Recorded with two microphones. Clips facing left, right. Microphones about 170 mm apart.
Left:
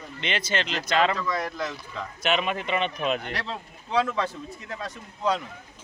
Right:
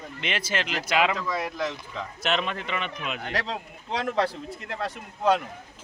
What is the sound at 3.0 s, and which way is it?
Speech, 35° left (ahead or behind).